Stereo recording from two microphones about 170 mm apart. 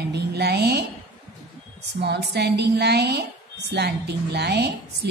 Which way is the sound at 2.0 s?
75° right (ahead or behind).